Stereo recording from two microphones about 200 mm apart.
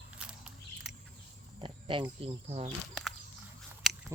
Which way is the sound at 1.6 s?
25° right (ahead or behind).